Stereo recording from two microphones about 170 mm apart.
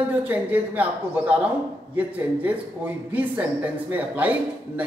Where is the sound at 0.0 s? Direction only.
10° right (ahead or behind).